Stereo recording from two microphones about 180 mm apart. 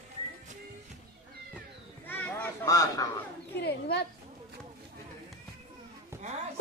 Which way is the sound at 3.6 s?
65° left (ahead or behind).